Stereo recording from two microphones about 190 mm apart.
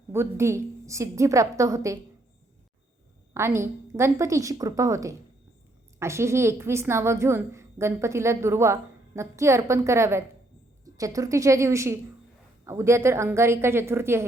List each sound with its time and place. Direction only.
0.1 s a woman's voice: 15° right (ahead or behind)
3.3 s a woman's voice: 15° right (ahead or behind)